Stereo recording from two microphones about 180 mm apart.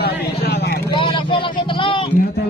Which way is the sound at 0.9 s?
25° left (ahead or behind).